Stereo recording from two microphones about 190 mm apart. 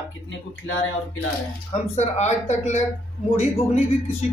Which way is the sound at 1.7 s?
35° left (ahead or behind).